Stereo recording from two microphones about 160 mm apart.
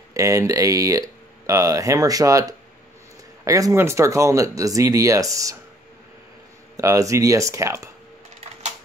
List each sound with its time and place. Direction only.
0.1 s speech: 20° right (ahead or behind)
6.8 s speech: 20° right (ahead or behind)